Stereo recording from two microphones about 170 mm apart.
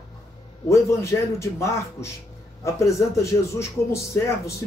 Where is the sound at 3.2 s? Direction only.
15° left (ahead or behind).